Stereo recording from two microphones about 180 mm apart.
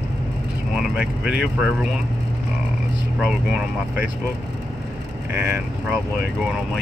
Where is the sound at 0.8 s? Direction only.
5° right (ahead or behind).